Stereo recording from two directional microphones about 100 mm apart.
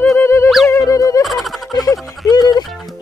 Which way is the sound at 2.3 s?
45° left (ahead or behind).